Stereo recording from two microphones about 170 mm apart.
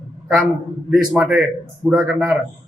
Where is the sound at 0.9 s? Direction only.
5° right (ahead or behind).